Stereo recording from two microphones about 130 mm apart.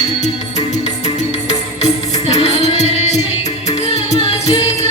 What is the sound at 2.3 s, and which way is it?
Music, 55° left (ahead or behind).